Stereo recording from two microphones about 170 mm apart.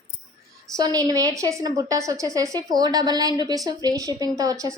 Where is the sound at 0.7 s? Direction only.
20° right (ahead or behind).